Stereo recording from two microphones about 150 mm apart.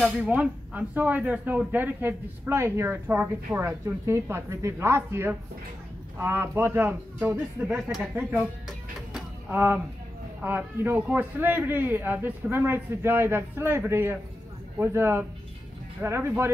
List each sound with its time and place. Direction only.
0.0 s speech: 10° right (ahead or behind)
9.5 s speech: 15° right (ahead or behind)